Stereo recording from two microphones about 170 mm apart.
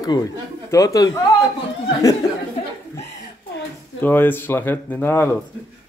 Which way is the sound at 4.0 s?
10° left (ahead or behind).